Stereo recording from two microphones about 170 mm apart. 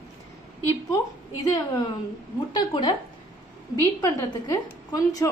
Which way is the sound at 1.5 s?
25° left (ahead or behind).